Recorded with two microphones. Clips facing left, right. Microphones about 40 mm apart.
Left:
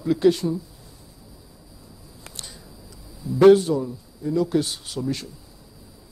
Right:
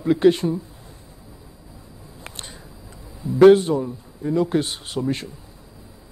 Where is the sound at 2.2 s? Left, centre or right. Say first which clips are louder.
Right 3 dB; right.